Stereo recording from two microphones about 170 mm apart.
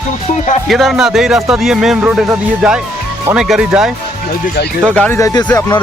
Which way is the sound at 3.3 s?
5° right (ahead or behind).